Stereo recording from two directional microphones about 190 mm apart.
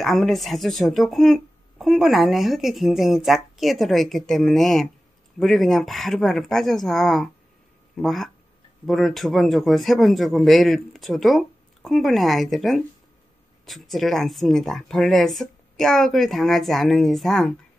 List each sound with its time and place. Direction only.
0.0 s speech: centre (ahead or behind)